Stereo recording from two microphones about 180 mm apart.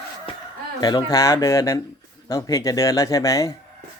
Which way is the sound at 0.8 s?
20° left (ahead or behind).